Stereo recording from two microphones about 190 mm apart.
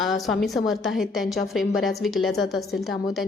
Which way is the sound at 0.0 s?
Centre (ahead or behind).